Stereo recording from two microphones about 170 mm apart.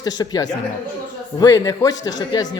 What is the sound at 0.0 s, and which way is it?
A man's voice, 25° left (ahead or behind).